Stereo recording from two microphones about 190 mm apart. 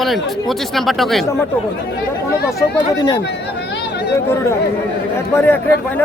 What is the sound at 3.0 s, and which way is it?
Speech, 20° left (ahead or behind).